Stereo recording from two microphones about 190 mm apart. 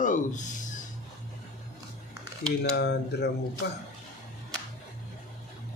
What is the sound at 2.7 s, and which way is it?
Speech, 60° left (ahead or behind).